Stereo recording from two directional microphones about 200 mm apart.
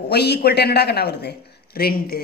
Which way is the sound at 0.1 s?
55° left (ahead or behind).